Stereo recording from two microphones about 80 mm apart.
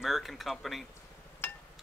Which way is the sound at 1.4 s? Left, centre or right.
Left.